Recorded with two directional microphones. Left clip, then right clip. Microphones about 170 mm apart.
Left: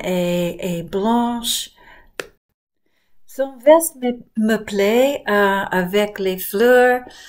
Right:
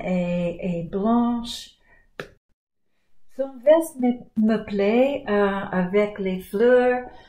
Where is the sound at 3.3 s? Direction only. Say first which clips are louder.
Left 5 dB; 20° left (ahead or behind).